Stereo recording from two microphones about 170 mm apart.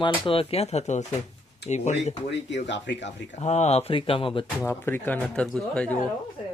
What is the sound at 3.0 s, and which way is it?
Speech, 40° left (ahead or behind).